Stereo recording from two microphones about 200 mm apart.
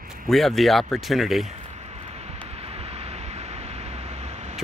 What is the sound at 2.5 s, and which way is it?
Vehicle, 30° right (ahead or behind).